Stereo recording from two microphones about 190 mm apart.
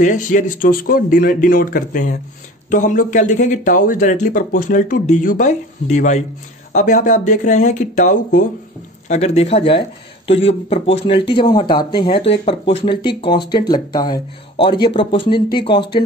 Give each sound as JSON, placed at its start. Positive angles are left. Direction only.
{"t": 0.0, "sound": "speech", "side_deg": 40}